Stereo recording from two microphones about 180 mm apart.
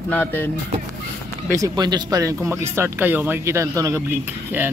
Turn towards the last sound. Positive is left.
turn(degrees=-10)  # may be behind; listen again after turning